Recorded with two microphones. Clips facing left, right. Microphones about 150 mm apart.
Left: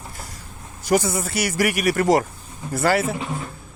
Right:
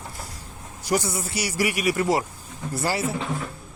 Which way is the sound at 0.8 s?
55° left (ahead or behind).